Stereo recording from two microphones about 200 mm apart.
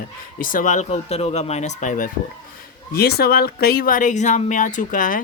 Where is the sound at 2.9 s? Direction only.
50° left (ahead or behind).